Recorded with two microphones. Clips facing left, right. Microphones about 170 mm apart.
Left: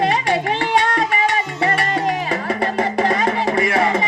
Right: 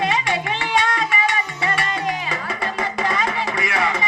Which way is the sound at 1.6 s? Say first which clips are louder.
Left 6 dB; 55° left (ahead or behind).